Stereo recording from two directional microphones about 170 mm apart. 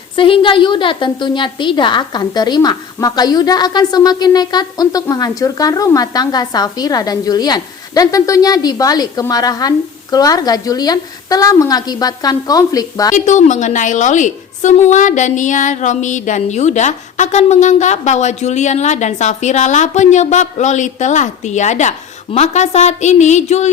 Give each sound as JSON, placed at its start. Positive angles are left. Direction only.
{"t": 0.2, "sound": "a woman's voice", "side_deg": 30}
{"t": 13.1, "sound": "a woman's voice", "side_deg": 45}